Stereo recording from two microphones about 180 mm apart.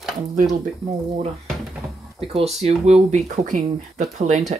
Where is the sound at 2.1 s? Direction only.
35° right (ahead or behind).